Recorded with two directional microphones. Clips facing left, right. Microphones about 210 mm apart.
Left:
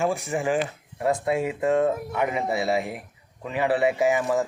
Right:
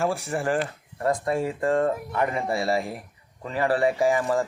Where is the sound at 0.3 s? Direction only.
10° left (ahead or behind).